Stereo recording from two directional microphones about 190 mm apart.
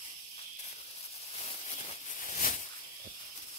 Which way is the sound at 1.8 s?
40° left (ahead or behind).